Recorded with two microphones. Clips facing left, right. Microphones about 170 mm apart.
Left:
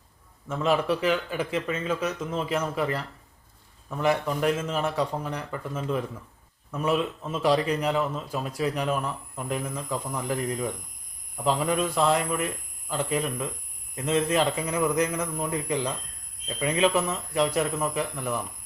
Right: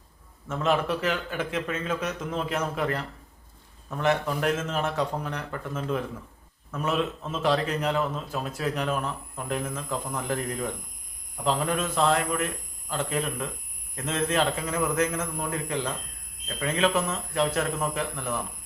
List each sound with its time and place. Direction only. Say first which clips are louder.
0.4 s a man's voice: left 1 dB; 5° left (ahead or behind)